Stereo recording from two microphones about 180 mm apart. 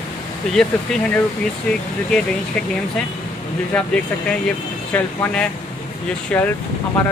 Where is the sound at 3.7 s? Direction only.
5° left (ahead or behind).